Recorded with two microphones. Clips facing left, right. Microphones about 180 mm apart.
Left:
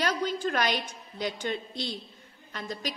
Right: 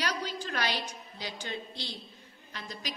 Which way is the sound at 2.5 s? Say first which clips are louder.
Left 6 dB; 45° left (ahead or behind).